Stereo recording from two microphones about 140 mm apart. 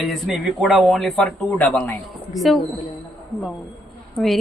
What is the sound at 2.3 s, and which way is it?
Speech, centre (ahead or behind).